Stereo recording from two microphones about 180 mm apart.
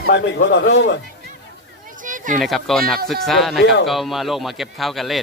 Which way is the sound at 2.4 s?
Centre (ahead or behind).